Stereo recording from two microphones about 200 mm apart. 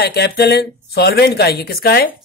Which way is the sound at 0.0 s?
55° left (ahead or behind).